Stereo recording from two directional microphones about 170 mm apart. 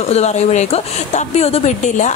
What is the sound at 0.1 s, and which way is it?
A woman's voice, 40° left (ahead or behind).